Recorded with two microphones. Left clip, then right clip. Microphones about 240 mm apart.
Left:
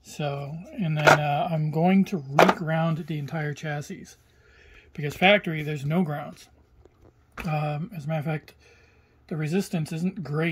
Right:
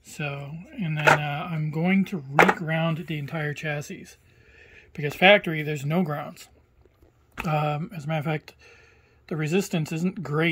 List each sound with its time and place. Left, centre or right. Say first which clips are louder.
0.0 s speech: left 2 dB; centre